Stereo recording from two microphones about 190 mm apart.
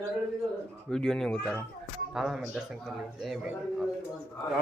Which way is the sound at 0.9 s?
5° left (ahead or behind).